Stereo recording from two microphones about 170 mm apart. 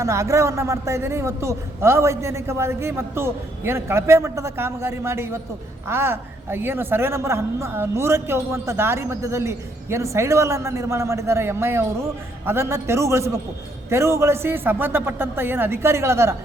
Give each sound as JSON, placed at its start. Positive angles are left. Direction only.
{"t": 0.0, "sound": "a woman's voice", "side_deg": -20}